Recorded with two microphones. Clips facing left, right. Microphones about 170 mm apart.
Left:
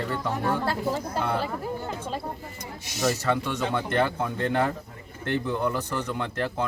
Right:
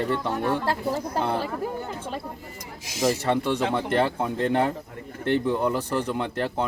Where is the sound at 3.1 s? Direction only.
30° right (ahead or behind).